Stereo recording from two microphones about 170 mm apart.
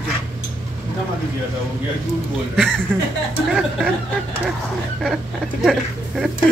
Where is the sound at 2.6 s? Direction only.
5° left (ahead or behind).